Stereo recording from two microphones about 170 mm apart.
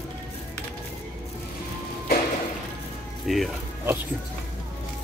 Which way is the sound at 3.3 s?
Centre (ahead or behind).